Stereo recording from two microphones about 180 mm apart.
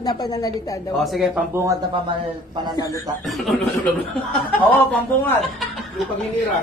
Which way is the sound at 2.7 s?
20° left (ahead or behind).